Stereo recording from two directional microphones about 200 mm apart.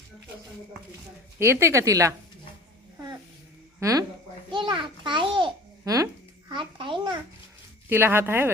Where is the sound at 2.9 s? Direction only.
20° right (ahead or behind).